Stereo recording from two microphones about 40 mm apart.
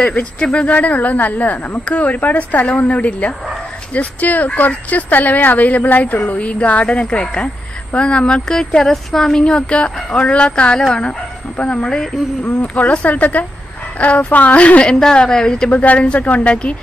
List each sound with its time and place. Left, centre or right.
0.4 s speech: left
2.9 s speech: left
8.5 s a woman's voice: centre
9.4 s speech: left
11.9 s a woman's voice: centre
12.5 s speech: left
15.0 s a woman's voice: centre
15.7 s speech: left